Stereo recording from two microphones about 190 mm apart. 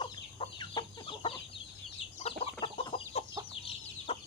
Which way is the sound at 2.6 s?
30° left (ahead or behind).